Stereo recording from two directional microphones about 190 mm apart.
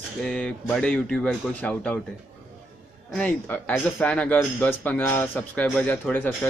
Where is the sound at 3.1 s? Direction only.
5° left (ahead or behind).